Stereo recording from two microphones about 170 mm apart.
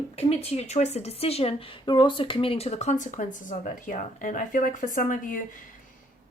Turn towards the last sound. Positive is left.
turn(degrees=50)  # may be behind; listen again after turning